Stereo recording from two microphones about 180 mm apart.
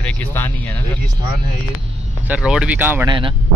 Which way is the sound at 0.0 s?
10° left (ahead or behind).